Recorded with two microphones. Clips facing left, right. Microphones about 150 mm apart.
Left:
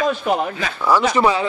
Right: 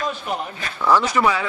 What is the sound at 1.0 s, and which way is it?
Speech, 25° left (ahead or behind).